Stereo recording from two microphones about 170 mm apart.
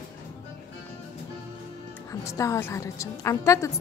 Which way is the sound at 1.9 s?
20° left (ahead or behind).